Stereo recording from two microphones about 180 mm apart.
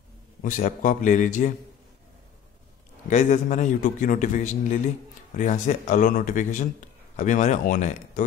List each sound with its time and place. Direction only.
0.4 s a man's voice: 45° left (ahead or behind)
3.1 s a man's voice: 40° left (ahead or behind)